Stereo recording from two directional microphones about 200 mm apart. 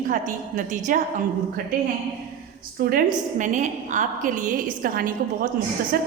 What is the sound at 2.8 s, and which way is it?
A woman's voice, 45° right (ahead or behind).